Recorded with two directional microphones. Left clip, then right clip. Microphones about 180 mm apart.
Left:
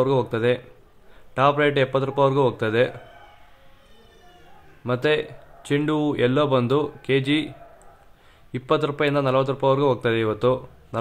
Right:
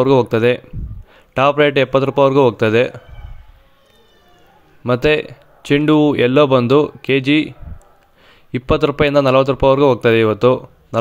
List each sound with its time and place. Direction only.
0.0 s speech: 45° right (ahead or behind)
4.8 s speech: 40° right (ahead or behind)
8.5 s speech: 40° right (ahead or behind)